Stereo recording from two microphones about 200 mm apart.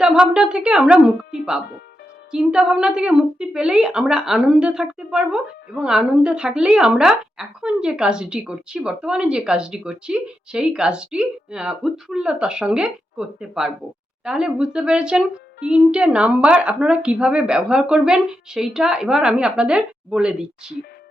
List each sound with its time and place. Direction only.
0.0 s a woman's voice: 5° right (ahead or behind)